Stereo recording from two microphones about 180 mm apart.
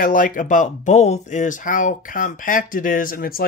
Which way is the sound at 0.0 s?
50° left (ahead or behind).